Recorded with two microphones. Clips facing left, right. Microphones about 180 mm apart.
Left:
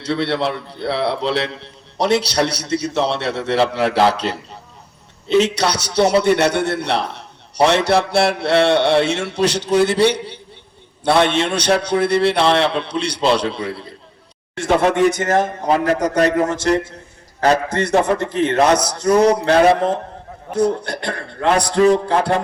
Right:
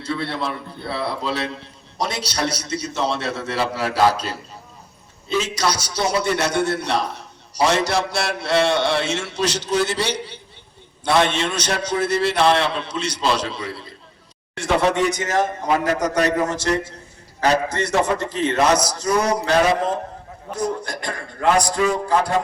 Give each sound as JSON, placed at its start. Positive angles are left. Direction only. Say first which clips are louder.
{"t": 0.0, "sound": "a man's voice", "louder": "left 6 dB", "side_deg": 75}
{"t": 5.4, "sound": "a man's voice", "louder": "left 4 dB", "side_deg": 65}